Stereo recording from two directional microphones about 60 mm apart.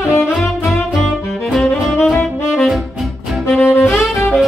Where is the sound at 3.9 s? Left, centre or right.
Centre.